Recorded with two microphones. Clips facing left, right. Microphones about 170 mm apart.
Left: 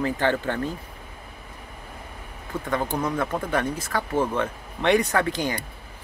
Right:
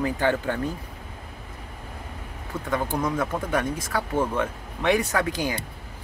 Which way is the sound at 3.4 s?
10° right (ahead or behind).